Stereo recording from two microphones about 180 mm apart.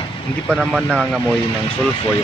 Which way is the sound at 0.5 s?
5° right (ahead or behind).